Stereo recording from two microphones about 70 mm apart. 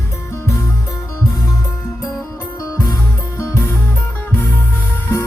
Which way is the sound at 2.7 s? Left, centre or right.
Left.